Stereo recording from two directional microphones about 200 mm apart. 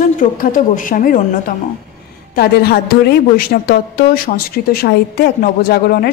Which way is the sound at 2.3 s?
50° left (ahead or behind).